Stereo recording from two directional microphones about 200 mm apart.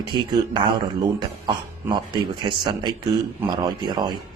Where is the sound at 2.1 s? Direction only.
20° right (ahead or behind).